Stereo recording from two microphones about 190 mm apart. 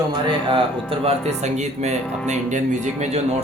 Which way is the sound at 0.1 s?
25° right (ahead or behind).